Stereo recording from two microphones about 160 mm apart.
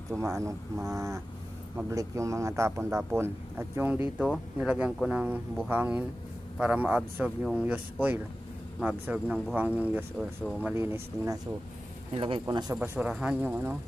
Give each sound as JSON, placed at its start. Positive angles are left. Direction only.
{"t": 0.4, "sound": "speech", "side_deg": -20}
{"t": 12.1, "sound": "speech", "side_deg": -35}
{"t": 12.7, "sound": "speech", "side_deg": -10}